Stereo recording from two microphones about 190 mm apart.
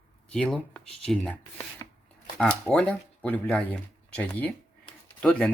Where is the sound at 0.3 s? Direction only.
5° left (ahead or behind).